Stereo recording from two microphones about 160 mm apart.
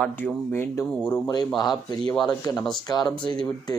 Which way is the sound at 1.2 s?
25° left (ahead or behind).